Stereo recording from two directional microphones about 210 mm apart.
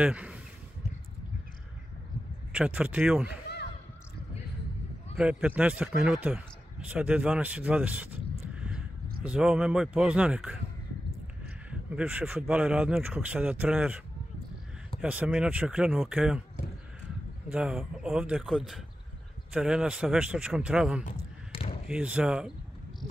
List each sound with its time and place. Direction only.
0.0 s speech: 5° right (ahead or behind)
2.5 s speech: 5° right (ahead or behind)
3.4 s a sound: 50° left (ahead or behind)
5.1 s speech: 5° right (ahead or behind)
8.5 s a sound: 5° right (ahead or behind)
9.2 s speech: 5° right (ahead or behind)
11.9 s speech: 5° right (ahead or behind)
17.5 s speech: 5° right (ahead or behind)
21.1 s a sound: 25° left (ahead or behind)
21.8 s speech: 5° right (ahead or behind)